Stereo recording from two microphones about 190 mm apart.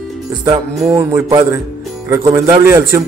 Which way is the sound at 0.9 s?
15° right (ahead or behind).